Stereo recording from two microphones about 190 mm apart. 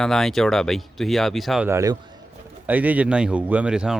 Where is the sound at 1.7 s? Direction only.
15° right (ahead or behind).